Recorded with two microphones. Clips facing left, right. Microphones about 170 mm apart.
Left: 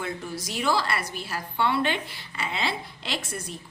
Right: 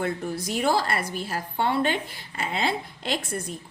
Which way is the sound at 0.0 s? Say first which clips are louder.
Right 5 dB; 50° right (ahead or behind).